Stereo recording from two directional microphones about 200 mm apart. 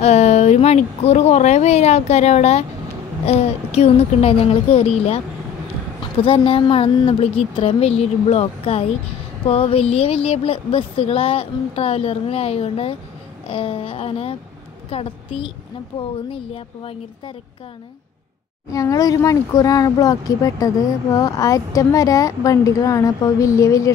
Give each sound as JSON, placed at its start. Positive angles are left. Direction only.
{"t": 0.0, "sound": "speech", "side_deg": 35}
{"t": 6.2, "sound": "a woman's voice", "side_deg": 30}
{"t": 18.7, "sound": "speech", "side_deg": 15}